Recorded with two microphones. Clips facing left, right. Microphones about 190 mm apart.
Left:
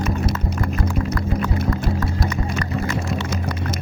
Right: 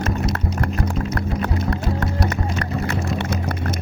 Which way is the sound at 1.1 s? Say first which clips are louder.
Left 1 dB; 70° right (ahead or behind).